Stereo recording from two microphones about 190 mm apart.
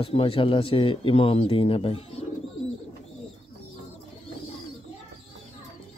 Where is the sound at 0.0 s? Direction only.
30° left (ahead or behind).